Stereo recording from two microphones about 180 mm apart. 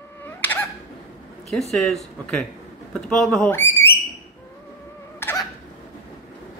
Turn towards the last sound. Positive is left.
turn(degrees=15)  # may be behind; listen again after turning